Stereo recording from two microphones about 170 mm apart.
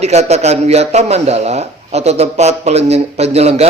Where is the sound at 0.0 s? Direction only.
40° right (ahead or behind).